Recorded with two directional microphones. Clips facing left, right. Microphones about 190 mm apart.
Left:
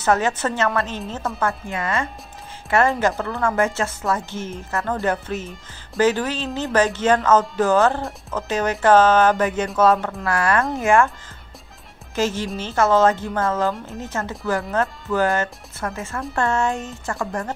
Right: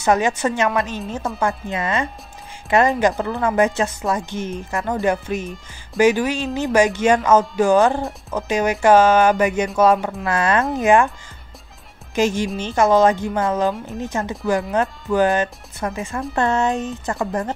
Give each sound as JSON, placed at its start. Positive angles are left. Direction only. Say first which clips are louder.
{"t": 0.0, "sound": "speech", "louder": "right 2 dB", "side_deg": -15}
{"t": 12.2, "sound": "speech", "louder": "right 3 dB", "side_deg": -15}